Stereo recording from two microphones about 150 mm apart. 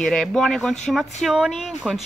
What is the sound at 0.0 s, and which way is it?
Speech, 5° left (ahead or behind).